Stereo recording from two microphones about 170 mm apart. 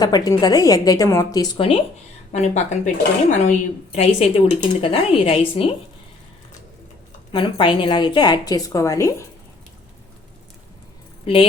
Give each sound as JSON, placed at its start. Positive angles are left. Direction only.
{"t": 0.0, "sound": "a woman's voice", "side_deg": 25}
{"t": 1.5, "sound": "a woman's voice", "side_deg": 35}
{"t": 7.3, "sound": "a woman's voice", "side_deg": 30}
{"t": 11.3, "sound": "a woman's voice", "side_deg": 30}